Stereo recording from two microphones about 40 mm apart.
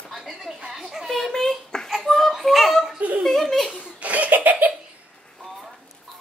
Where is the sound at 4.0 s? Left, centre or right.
Right.